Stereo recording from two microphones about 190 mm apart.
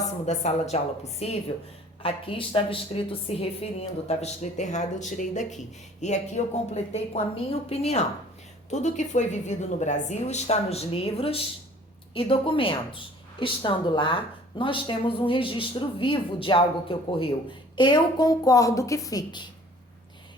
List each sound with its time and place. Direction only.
0.3 s a woman's voice: 35° left (ahead or behind); by 19.5 s 20° left (ahead or behind)